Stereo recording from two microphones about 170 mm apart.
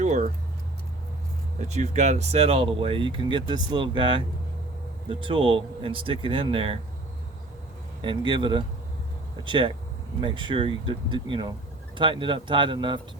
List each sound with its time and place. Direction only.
0.0 s keys jangling: 45° right (ahead or behind)
1.5 s speech: 40° right (ahead or behind)
8.0 s speech: 30° right (ahead or behind)